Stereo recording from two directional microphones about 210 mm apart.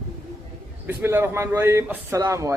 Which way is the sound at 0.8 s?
10° right (ahead or behind).